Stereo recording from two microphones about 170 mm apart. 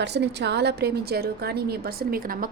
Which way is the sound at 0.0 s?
85° right.